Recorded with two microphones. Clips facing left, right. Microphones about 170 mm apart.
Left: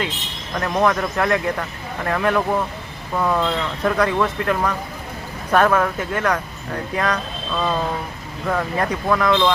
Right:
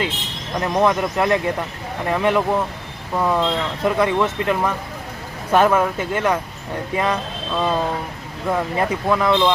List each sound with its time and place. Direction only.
0.5 s speech: 15° right (ahead or behind)